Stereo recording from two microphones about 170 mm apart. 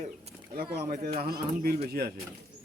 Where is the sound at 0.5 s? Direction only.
70° right (ahead or behind).